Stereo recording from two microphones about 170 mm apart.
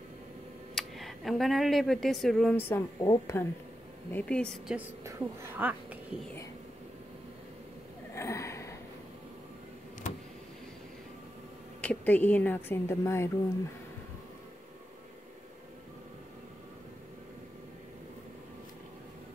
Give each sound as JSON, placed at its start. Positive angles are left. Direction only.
{"t": 0.7, "sound": "speech", "side_deg": 0}
{"t": 2.7, "sound": "speech", "side_deg": 20}
{"t": 4.1, "sound": "a woman's voice", "side_deg": 5}
{"t": 4.7, "sound": "a woman's voice", "side_deg": -15}
{"t": 8.1, "sound": "a sound", "side_deg": 15}
{"t": 11.8, "sound": "speech", "side_deg": 10}